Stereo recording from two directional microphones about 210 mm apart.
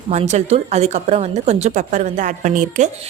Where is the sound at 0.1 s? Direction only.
30° right (ahead or behind).